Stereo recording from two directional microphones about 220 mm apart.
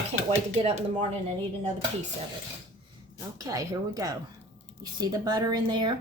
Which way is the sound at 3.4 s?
15° right (ahead or behind).